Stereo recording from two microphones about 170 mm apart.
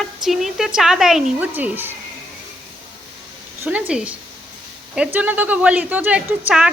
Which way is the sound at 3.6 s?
10° right (ahead or behind).